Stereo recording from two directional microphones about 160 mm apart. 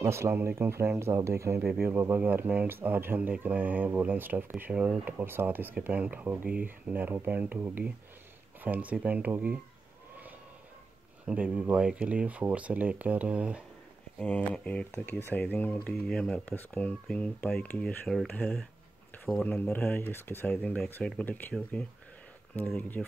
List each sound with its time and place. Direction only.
0.0 s speech: 15° right (ahead or behind)
11.2 s speech: 10° right (ahead or behind)
14.1 s speech: 5° left (ahead or behind)
22.7 s speech: 5° left (ahead or behind)